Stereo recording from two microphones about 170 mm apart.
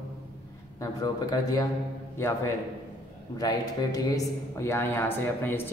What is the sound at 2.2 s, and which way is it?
A man's voice, 15° left (ahead or behind).